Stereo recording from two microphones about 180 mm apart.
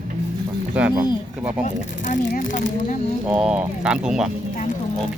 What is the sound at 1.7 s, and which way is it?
Speech, 45° left (ahead or behind).